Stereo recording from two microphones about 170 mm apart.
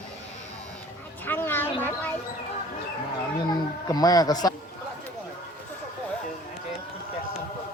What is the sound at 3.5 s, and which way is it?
Music, 20° left (ahead or behind).